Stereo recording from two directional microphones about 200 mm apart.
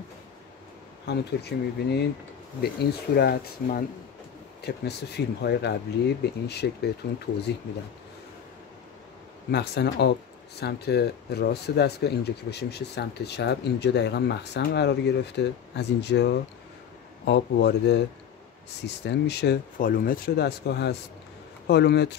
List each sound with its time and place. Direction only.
1.0 s speech: 55° left (ahead or behind)
3.2 s speech: 55° left (ahead or behind)
9.5 s speech: 55° left (ahead or behind)
19.0 s speech: 55° left (ahead or behind)